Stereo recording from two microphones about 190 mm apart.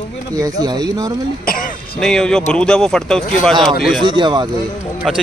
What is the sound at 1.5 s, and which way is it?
Throat clearing, 45° left (ahead or behind).